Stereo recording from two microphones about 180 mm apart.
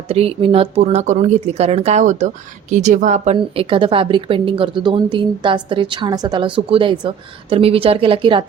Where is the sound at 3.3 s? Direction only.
30° right (ahead or behind).